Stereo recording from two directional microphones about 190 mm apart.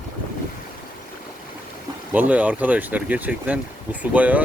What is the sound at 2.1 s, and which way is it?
Speech, 10° right (ahead or behind).